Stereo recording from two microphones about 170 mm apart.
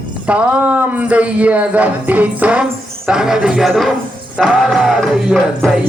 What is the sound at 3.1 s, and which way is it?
Music, 5° right (ahead or behind).